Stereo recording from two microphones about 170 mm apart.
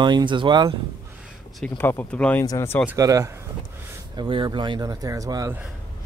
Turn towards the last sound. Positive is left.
turn(degrees=-20)  # may be behind; listen again after turning